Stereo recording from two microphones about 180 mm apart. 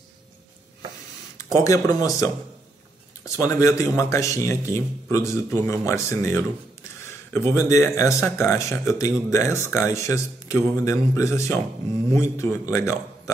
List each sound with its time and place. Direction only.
1.4 s speech: 15° left (ahead or behind)